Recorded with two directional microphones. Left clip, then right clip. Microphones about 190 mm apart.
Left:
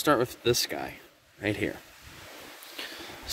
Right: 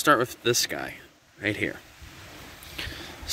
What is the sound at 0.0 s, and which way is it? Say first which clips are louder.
Speech: right 3 dB; 5° left (ahead or behind).